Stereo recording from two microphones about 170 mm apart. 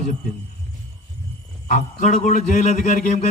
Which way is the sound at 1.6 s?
45° left (ahead or behind).